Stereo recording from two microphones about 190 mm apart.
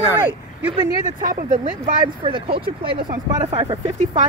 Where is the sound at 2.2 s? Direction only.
30° right (ahead or behind).